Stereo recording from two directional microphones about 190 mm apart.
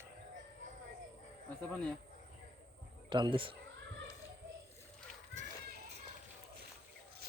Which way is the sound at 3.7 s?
85° right.